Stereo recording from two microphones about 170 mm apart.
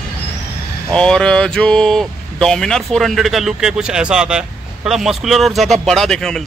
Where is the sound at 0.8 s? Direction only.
5° left (ahead or behind).